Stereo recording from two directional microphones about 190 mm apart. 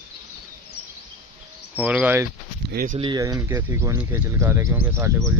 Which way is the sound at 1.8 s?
10° right (ahead or behind).